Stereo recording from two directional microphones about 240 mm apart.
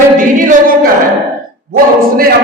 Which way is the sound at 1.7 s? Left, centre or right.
Right.